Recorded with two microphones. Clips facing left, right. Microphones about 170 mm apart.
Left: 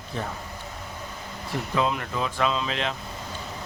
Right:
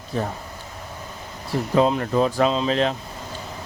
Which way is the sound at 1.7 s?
35° right (ahead or behind).